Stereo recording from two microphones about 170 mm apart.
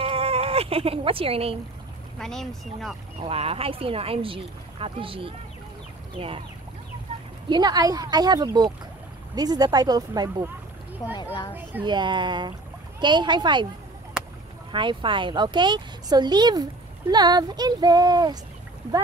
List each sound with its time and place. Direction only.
0.0 s a sound: 35° right (ahead or behind)
2.1 s speech: 5° left (ahead or behind)
3.2 s speech: 35° right (ahead or behind)
7.4 s speech: 25° right (ahead or behind)
11.8 s speech: 25° right (ahead or behind)
14.7 s speech: 30° right (ahead or behind)